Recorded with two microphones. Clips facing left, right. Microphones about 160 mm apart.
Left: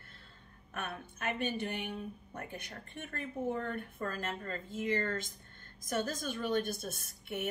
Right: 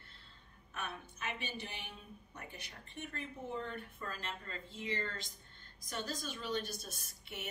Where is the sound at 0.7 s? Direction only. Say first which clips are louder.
Left 3 dB; 55° left (ahead or behind).